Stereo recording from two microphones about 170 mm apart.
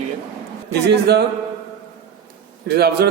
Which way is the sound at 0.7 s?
80° right.